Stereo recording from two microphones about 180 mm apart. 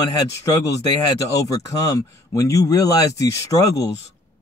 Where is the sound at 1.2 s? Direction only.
20° left (ahead or behind).